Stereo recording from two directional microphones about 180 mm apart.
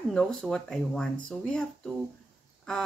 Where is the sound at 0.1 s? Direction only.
5° left (ahead or behind).